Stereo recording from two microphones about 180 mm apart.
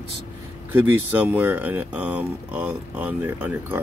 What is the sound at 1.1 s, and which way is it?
Speech, 10° right (ahead or behind).